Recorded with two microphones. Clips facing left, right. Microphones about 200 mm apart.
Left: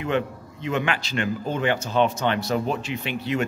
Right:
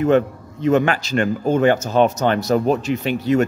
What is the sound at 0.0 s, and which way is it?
A man's voice, 45° right (ahead or behind).